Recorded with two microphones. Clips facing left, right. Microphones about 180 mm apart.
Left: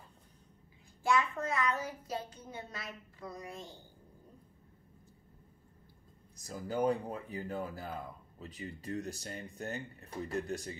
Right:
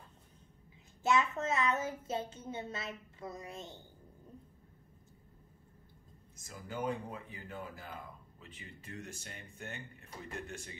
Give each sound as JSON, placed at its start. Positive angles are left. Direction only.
{"t": 1.0, "sound": "a woman's voice", "side_deg": -25}
{"t": 6.3, "sound": "speech", "side_deg": 35}